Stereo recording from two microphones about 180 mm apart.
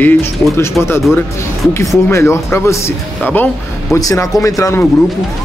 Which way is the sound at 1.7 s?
15° left (ahead or behind).